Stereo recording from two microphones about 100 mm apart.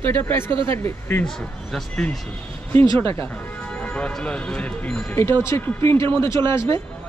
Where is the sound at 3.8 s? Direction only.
15° left (ahead or behind).